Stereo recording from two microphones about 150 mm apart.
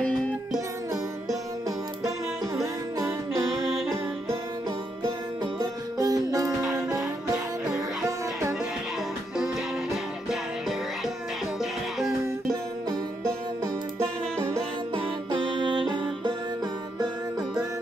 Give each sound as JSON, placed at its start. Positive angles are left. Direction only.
{"t": 2.0, "sound": "music", "side_deg": -20}
{"t": 5.6, "sound": "music", "side_deg": -25}
{"t": 15.0, "sound": "music", "side_deg": -35}